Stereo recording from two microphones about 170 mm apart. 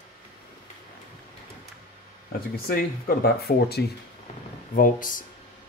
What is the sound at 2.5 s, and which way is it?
Speech, 60° left (ahead or behind).